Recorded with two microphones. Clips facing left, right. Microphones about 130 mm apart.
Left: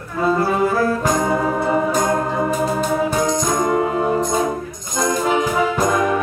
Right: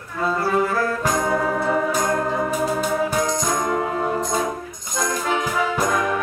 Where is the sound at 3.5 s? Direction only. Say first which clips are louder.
Left 4 dB; 15° left (ahead or behind).